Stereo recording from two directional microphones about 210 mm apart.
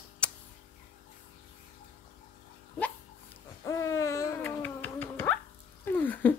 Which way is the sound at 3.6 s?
15° left (ahead or behind).